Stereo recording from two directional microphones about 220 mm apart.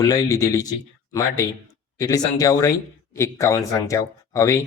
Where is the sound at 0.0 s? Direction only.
15° left (ahead or behind).